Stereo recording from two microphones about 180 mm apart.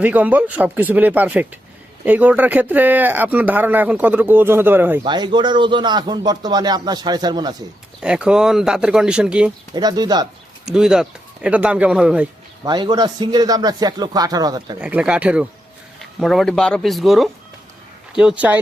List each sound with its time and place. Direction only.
0.0 s speech: 10° right (ahead or behind)
5.0 s speech: 25° right (ahead or behind)
8.0 s speech: 5° right (ahead or behind)
9.7 s speech: 20° right (ahead or behind)
10.7 s speech: 5° right (ahead or behind)
12.6 s speech: 25° right (ahead or behind)
14.8 s speech: 5° right (ahead or behind)